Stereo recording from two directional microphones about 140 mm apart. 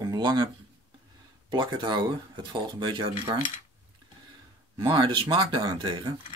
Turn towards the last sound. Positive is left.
turn(degrees=-30)  # may be behind; listen again after turning